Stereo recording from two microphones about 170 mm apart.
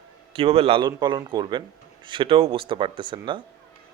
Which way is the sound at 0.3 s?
35° right (ahead or behind).